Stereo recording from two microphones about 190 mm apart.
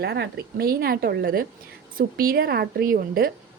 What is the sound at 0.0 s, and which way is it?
A woman's voice, 55° right (ahead or behind).